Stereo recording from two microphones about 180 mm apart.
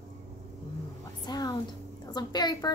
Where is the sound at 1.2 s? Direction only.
20° left (ahead or behind).